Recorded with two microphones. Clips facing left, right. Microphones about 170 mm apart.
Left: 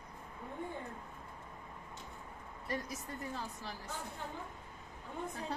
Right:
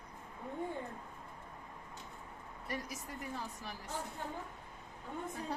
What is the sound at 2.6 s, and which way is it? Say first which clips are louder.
Speech: left 2 dB; 30° left (ahead or behind).